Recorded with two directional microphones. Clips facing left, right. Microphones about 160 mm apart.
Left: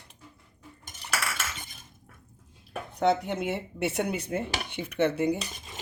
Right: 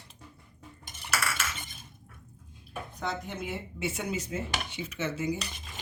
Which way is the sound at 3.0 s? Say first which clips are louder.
Left 11 dB; 70° left (ahead or behind).